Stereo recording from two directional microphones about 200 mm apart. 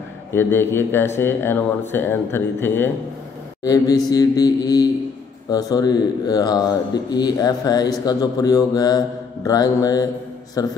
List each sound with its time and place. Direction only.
0.3 s speech: 10° left (ahead or behind)